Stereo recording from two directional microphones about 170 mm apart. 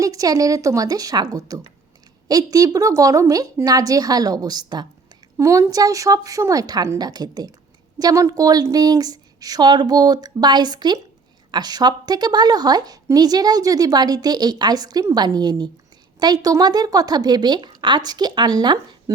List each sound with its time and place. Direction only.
0.0 s a woman's voice: 20° right (ahead or behind)